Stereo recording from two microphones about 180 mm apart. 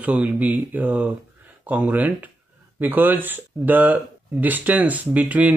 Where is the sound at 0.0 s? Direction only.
10° right (ahead or behind).